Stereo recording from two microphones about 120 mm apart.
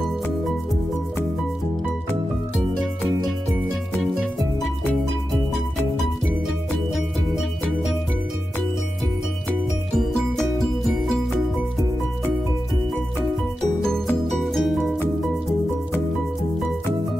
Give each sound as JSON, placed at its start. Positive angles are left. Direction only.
{"t": 9.9, "sound": "music", "side_deg": 0}
{"t": 14.3, "sound": "music", "side_deg": 0}